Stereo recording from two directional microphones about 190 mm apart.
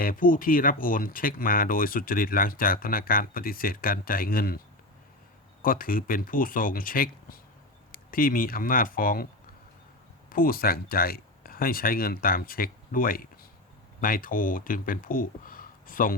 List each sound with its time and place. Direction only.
0.0 s speech: 45° left (ahead or behind)
5.6 s speech: 50° left (ahead or behind)
10.3 s speech: 50° left (ahead or behind)